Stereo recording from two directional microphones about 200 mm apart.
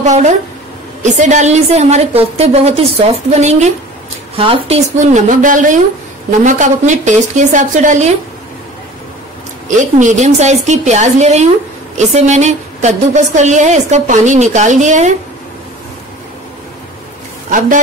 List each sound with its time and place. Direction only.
0.0 s a woman's voice: 35° right (ahead or behind)
9.8 s a woman's voice: 40° right (ahead or behind)
17.5 s a woman's voice: 40° right (ahead or behind)